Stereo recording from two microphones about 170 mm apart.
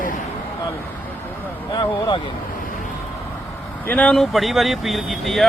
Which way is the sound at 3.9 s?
10° left (ahead or behind).